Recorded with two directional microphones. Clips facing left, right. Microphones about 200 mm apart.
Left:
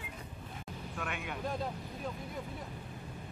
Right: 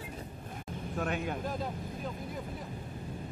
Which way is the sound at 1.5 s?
Centre (ahead or behind).